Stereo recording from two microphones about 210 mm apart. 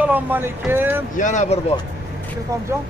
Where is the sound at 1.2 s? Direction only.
35° left (ahead or behind).